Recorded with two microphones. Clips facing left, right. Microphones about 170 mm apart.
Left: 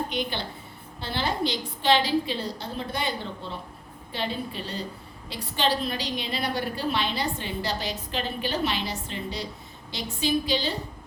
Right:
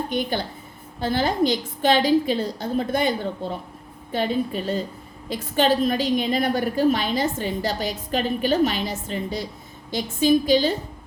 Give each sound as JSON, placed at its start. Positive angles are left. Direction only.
{"t": 0.1, "sound": "a woman's voice", "side_deg": -45}